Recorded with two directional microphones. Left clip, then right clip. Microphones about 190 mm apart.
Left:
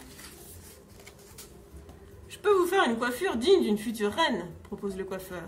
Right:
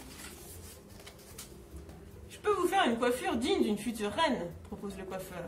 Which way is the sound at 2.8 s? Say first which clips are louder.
Left 2 dB; 35° left (ahead or behind).